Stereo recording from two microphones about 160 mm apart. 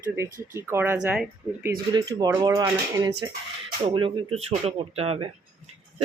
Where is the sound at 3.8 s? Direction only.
30° right (ahead or behind).